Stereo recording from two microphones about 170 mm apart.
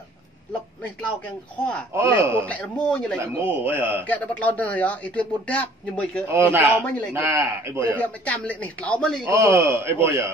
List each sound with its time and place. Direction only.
1.6 s speech: 5° left (ahead or behind)
2.0 s a man's voice: 15° right (ahead or behind)
2.4 s speech: 5° left (ahead or behind)
3.2 s a man's voice: 15° right (ahead or behind)
4.1 s speech: 10° left (ahead or behind)
6.2 s a man's voice: 15° right (ahead or behind)
8.0 s speech: 10° left (ahead or behind)
9.2 s a man's voice: 15° right (ahead or behind)